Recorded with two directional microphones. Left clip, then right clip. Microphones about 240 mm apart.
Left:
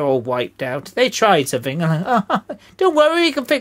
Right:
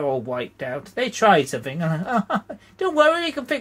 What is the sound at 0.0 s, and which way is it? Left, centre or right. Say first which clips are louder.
Speech: left 6 dB; left.